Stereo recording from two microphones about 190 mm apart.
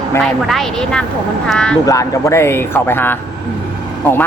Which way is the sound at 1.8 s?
15° left (ahead or behind).